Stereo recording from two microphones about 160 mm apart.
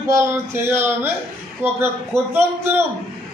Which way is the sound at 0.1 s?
15° right (ahead or behind).